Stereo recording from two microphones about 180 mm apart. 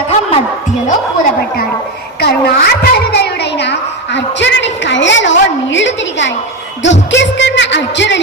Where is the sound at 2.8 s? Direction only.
65° left (ahead or behind); by 6.3 s 90° left.